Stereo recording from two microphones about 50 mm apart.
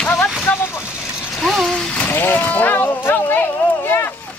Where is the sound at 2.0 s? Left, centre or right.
Left.